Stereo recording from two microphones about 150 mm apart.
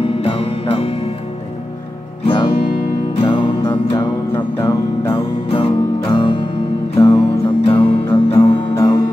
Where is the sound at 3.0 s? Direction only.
35° left (ahead or behind).